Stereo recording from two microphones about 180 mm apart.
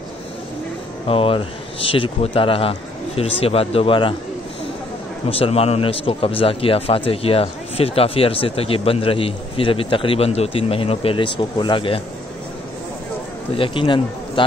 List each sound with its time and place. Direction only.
1.0 s speech: 30° left (ahead or behind)
5.3 s speech: 30° left (ahead or behind)
13.6 s a man's voice: 30° left (ahead or behind)